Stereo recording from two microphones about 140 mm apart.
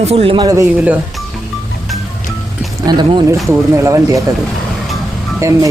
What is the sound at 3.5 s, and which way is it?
Speech, 20° right (ahead or behind).